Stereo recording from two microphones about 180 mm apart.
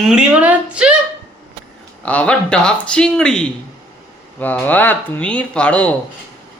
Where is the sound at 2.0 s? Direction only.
5° left (ahead or behind).